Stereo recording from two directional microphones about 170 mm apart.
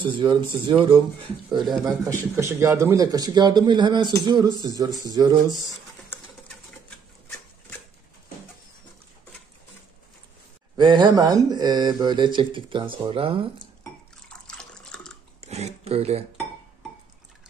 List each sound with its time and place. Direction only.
0.0 s speech: 30° right (ahead or behind)
2.0 s speech: 15° right (ahead or behind)
10.8 s speech: 30° right (ahead or behind)
14.3 s water: 5° left (ahead or behind)
15.4 s a sound: 40° right (ahead or behind)